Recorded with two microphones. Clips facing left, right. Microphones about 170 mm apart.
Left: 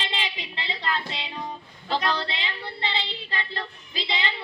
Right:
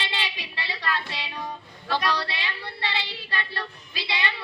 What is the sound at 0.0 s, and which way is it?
Music, 20° left (ahead or behind).